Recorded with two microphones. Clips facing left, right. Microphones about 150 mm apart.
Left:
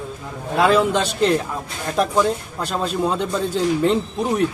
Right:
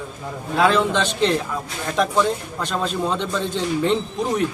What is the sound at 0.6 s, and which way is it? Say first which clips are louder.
A man's voice: left 2 dB; 10° left (ahead or behind).